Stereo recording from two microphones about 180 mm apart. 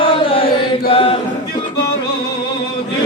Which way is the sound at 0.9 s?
30° left (ahead or behind).